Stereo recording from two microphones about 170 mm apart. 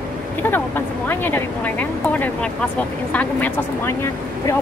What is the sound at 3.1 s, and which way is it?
Speech, 10° left (ahead or behind).